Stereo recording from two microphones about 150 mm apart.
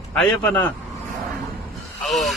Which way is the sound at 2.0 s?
Centre (ahead or behind).